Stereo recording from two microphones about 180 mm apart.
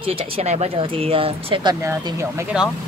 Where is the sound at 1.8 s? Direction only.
15° right (ahead or behind).